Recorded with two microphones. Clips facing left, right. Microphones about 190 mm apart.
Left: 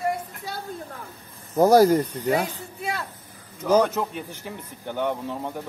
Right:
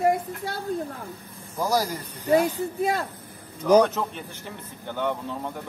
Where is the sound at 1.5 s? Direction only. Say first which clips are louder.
Left 10 dB; 55° left (ahead or behind).